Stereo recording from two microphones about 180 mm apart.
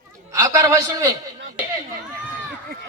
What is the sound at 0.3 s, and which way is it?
Speech, 20° right (ahead or behind).